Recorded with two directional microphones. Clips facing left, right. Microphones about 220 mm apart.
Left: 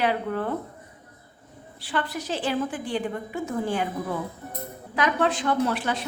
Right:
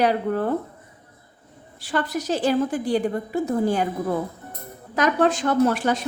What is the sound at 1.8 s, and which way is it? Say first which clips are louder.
A woman's voice: right 5 dB; 45° right (ahead or behind).